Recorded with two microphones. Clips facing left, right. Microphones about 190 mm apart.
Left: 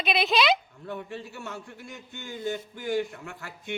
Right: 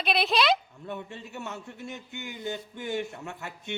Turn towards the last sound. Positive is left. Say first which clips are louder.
# right 2 dB
turn(degrees=-25)  # may be behind; listen again after turning